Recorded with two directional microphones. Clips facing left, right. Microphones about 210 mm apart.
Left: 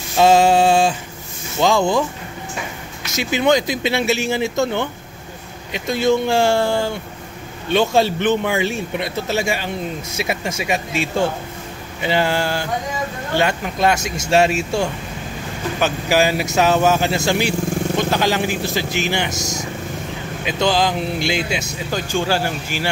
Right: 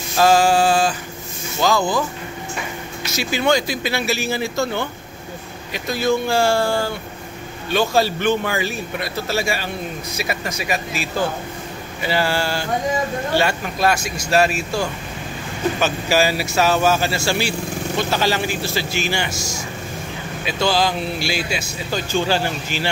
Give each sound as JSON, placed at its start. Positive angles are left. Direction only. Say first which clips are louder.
{"t": 0.2, "sound": "a man's voice", "louder": "left 2 dB", "side_deg": 25}
{"t": 3.2, "sound": "a man's voice", "louder": "left 2 dB", "side_deg": 20}
{"t": 20.4, "sound": "speech", "louder": "left 1 dB", "side_deg": 20}